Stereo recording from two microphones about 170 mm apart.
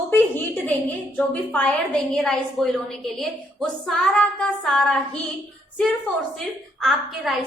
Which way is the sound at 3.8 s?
5° left (ahead or behind).